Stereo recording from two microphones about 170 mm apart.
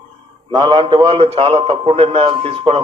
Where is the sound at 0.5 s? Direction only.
25° right (ahead or behind).